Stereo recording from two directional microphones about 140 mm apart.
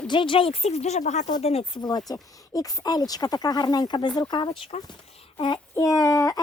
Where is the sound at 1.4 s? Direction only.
45° left (ahead or behind).